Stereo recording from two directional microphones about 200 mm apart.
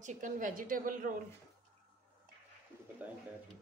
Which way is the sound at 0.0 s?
40° right (ahead or behind).